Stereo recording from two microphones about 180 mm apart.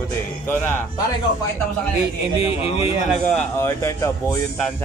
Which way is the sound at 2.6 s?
35° left (ahead or behind).